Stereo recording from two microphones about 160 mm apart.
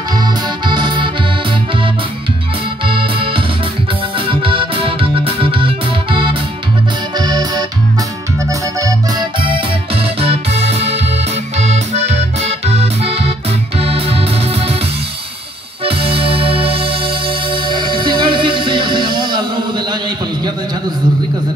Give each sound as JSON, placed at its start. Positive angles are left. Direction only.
{"t": 0.2, "sound": "music", "side_deg": -30}
{"t": 2.9, "sound": "music", "side_deg": -35}
{"t": 7.2, "sound": "accordion", "side_deg": -25}
{"t": 8.5, "sound": "music", "side_deg": -20}
{"t": 15.8, "sound": "music", "side_deg": -35}